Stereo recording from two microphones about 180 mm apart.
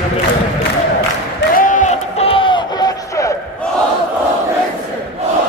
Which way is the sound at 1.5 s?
45° left (ahead or behind).